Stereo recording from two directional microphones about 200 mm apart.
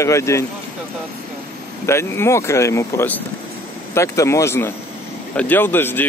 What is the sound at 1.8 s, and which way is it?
A man's voice, 15° left (ahead or behind).